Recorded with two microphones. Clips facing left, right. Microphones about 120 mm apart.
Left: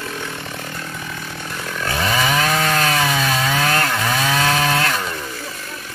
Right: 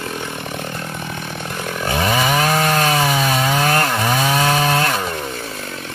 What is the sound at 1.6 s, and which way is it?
Chainsaw, 20° right (ahead or behind).